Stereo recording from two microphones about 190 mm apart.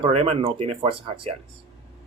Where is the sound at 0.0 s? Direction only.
35° right (ahead or behind).